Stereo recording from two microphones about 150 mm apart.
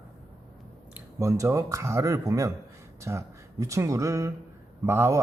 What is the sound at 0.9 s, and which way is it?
Speech, 20° right (ahead or behind).